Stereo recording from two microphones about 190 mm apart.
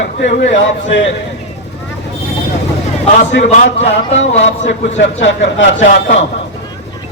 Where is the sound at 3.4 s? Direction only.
35° left (ahead or behind).